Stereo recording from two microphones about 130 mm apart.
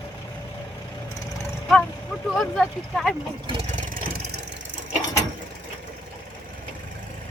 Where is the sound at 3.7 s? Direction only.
80° right.